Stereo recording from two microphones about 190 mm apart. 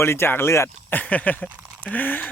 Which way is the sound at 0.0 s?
10° left (ahead or behind).